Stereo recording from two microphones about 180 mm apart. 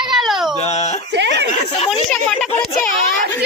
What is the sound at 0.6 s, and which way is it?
Speech, 40° left (ahead or behind).